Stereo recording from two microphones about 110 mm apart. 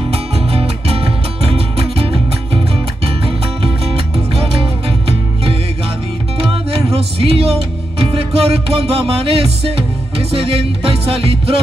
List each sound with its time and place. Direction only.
0.1 s music: 65° right (ahead or behind)
3.6 s music: 60° right (ahead or behind)